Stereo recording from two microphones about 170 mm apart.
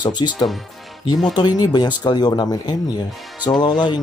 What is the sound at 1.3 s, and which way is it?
Speech, 25° left (ahead or behind).